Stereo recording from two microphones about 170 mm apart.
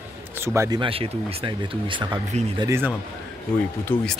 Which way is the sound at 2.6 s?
15° right (ahead or behind).